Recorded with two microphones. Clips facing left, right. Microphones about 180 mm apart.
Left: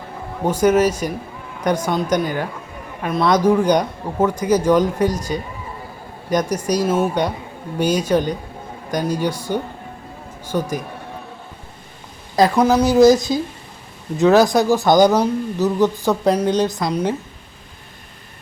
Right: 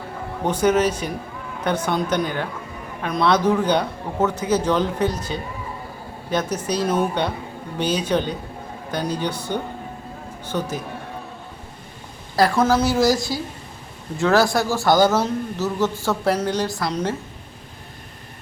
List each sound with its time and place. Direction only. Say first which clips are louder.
0.4 s speech: left 3 dB; 10° left (ahead or behind)
6.7 s speech: left 3 dB; 10° left (ahead or behind)
12.4 s speech: left 3 dB; 15° left (ahead or behind)